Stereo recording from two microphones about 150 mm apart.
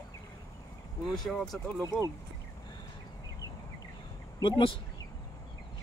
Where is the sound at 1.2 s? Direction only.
Centre (ahead or behind).